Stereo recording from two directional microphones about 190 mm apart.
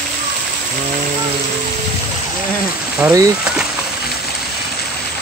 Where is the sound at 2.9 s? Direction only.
15° right (ahead or behind).